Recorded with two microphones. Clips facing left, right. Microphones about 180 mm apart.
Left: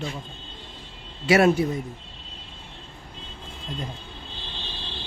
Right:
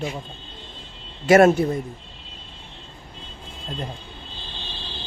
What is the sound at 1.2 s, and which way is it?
Speech, 45° right (ahead or behind).